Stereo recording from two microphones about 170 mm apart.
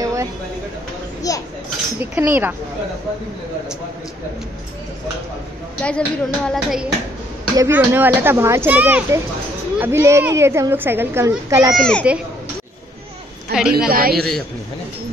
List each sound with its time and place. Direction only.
0.0 s a sound: 20° right (ahead or behind)
1.3 s a sound: 20° left (ahead or behind)
2.0 s a woman's voice: 10° right (ahead or behind)
5.8 s speech: 5° left (ahead or behind)
7.5 s a woman's voice: 15° right (ahead or behind)
11.7 s speech: 5° left (ahead or behind)
13.6 s speech: 5° right (ahead or behind)
13.8 s a woman's voice: 60° right (ahead or behind)